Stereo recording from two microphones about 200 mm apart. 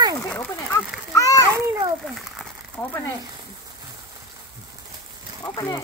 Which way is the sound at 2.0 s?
Centre (ahead or behind).